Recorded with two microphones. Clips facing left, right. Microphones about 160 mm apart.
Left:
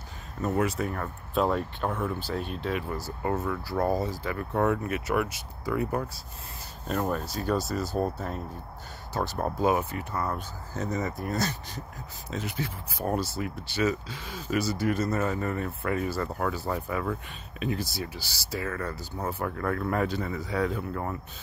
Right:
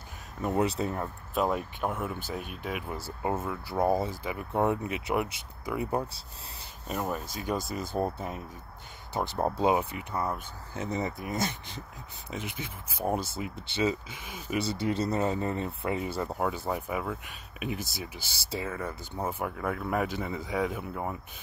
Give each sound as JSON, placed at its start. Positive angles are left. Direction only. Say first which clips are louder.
{"t": 0.4, "sound": "speech", "louder": "left 1 dB", "side_deg": -15}
{"t": 0.7, "sound": "speech", "louder": "even", "side_deg": -25}
{"t": 1.3, "sound": "speech", "louder": "left 3 dB", "side_deg": -10}
{"t": 6.9, "sound": "speech", "louder": "left 4 dB", "side_deg": -10}
{"t": 7.4, "sound": "speech", "louder": "left 4 dB", "side_deg": -20}
{"t": 9.4, "sound": "speech", "louder": "even", "side_deg": -20}
{"t": 11.3, "sound": "speech", "louder": "left 2 dB", "side_deg": -20}
{"t": 19.5, "sound": "speech", "louder": "left 2 dB", "side_deg": -10}